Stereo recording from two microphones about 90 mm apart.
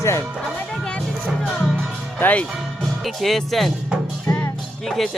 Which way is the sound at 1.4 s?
5° left (ahead or behind).